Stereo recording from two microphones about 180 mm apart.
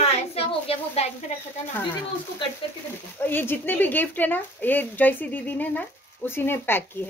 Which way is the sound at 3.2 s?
10° left (ahead or behind).